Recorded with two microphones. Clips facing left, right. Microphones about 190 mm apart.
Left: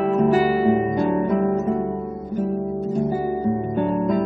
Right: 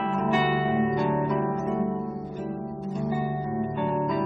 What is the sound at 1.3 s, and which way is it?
Guitar, 40° left (ahead or behind).